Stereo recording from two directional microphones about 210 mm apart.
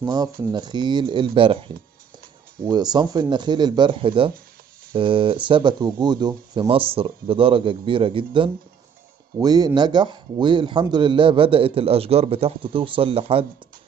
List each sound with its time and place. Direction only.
0.0 s speech: 20° right (ahead or behind)